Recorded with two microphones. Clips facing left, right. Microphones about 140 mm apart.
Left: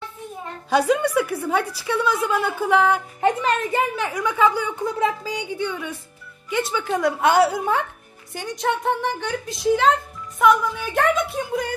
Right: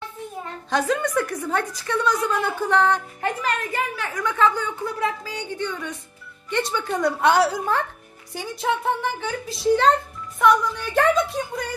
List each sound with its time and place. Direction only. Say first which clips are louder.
0.7 s a woman's voice: left 4 dB; 10° left (ahead or behind)
3.2 s a woman's voice: left 5 dB; 20° left (ahead or behind)
4.1 s a woman's voice: right 1 dB; 10° left (ahead or behind)